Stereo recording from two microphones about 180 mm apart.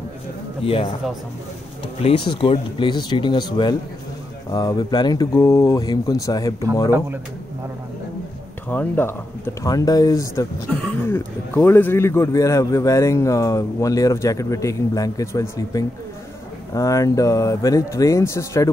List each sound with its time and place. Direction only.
0.7 s speech: 30° left (ahead or behind)
2.0 s speech: 30° left (ahead or behind)
8.6 s speech: 10° left (ahead or behind)
16.7 s speech: 20° left (ahead or behind)